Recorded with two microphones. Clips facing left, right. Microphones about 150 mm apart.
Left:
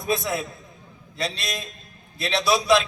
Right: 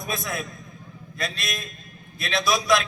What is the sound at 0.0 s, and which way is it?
A man's voice, 30° left (ahead or behind).